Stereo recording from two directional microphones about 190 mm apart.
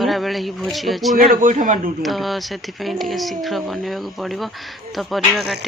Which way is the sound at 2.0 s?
Centre (ahead or behind).